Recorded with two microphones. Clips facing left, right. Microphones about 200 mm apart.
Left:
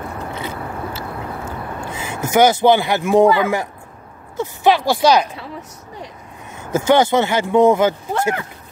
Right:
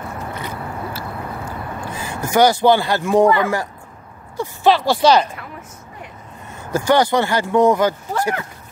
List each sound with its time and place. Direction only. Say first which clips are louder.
0.9 s a sound: left 1 dB; 25° left (ahead or behind)
3.3 s speech: left 1 dB; 5° left (ahead or behind)
6.7 s speech: left 2 dB; 20° left (ahead or behind)